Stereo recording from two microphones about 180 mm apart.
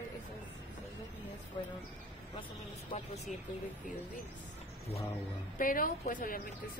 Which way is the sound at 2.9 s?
35° left (ahead or behind).